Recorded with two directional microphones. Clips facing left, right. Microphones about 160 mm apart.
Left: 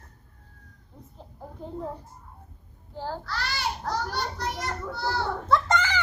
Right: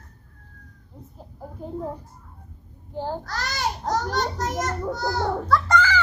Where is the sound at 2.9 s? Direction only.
15° right (ahead or behind).